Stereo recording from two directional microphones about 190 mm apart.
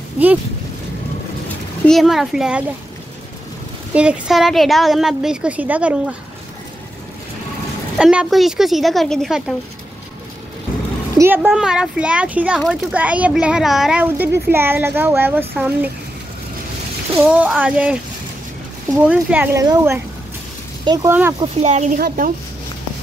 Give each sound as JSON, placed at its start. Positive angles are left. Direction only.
{"t": 1.9, "sound": "a woman's voice", "side_deg": 0}
{"t": 3.9, "sound": "a woman's voice", "side_deg": -5}
{"t": 8.0, "sound": "a woman's voice", "side_deg": -5}
{"t": 11.1, "sound": "speech", "side_deg": -10}
{"t": 17.3, "sound": "speech", "side_deg": -5}
{"t": 19.0, "sound": "speech", "side_deg": -10}
{"t": 21.1, "sound": "speech", "side_deg": -10}
{"t": 21.4, "sound": "speech", "side_deg": -35}